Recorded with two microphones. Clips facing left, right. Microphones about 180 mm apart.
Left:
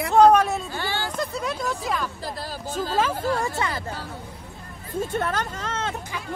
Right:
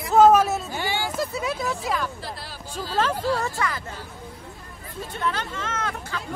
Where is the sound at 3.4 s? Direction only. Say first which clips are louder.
Left 1 dB; 25° left (ahead or behind).